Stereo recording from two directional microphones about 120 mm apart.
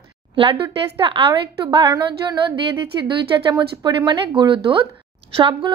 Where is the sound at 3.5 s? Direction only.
35° right (ahead or behind).